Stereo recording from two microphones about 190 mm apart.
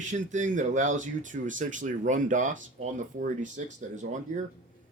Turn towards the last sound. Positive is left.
turn(degrees=-40)  # may be behind; listen again after turning